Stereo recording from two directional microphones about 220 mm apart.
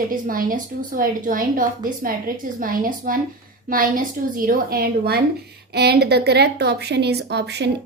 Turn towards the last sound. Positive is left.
turn(degrees=-50)  # may be behind; listen again after turning